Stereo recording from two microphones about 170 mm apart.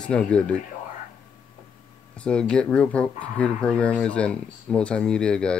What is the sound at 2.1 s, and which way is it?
Speech, 5° left (ahead or behind).